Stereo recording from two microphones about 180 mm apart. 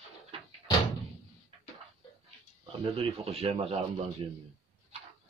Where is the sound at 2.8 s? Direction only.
35° right (ahead or behind).